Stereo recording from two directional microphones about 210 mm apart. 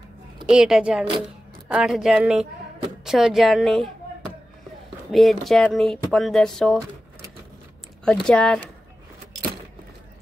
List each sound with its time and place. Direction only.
0.5 s speech: 5° right (ahead or behind)
5.1 s speech: centre (ahead or behind)
8.0 s speech: 5° left (ahead or behind)